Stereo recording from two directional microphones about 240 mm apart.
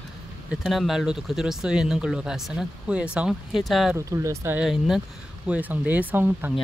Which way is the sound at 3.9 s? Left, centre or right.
Centre.